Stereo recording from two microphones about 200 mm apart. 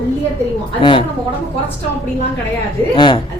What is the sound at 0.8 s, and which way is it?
Speech, 25° left (ahead or behind).